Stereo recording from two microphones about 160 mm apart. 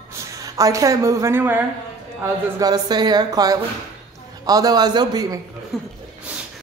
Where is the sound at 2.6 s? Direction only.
25° right (ahead or behind).